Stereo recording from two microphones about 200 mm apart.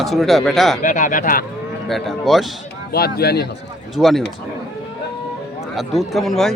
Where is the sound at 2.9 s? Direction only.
50° left (ahead or behind).